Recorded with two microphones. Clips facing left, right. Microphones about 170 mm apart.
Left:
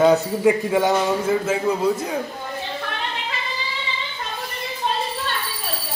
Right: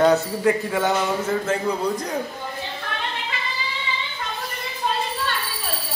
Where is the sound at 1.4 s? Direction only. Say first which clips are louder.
Left 3 dB; 5° left (ahead or behind).